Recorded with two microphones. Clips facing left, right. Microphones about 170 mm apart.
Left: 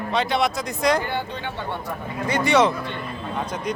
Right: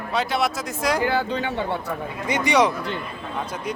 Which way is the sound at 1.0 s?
90° right.